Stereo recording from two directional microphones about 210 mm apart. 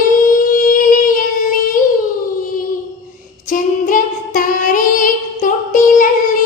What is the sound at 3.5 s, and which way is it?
Female singing, 40° left (ahead or behind).